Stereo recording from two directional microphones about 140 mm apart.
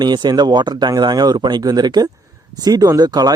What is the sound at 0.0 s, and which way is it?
Speech, 30° right (ahead or behind).